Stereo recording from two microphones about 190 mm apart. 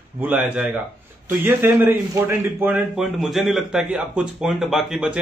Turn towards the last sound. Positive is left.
turn(degrees=-5)  # may be behind; listen again after turning